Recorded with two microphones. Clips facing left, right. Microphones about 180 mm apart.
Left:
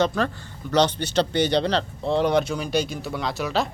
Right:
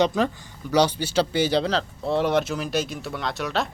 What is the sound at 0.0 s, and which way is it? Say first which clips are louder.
Speech: right 1 dB; 15° right (ahead or behind).